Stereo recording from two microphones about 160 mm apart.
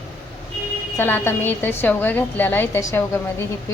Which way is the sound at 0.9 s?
15° left (ahead or behind).